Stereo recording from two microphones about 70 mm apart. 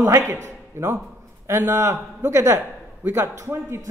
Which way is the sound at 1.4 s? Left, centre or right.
Right.